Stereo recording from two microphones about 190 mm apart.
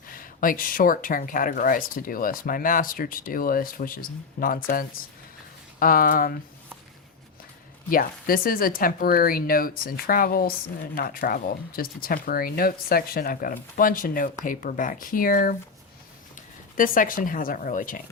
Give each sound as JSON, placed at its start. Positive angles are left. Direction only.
{"t": 0.1, "sound": "speech", "side_deg": 45}
{"t": 7.9, "sound": "speech", "side_deg": 50}
{"t": 16.7, "sound": "speech", "side_deg": 45}